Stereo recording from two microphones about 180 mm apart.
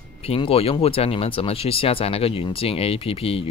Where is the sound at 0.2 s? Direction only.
30° left (ahead or behind).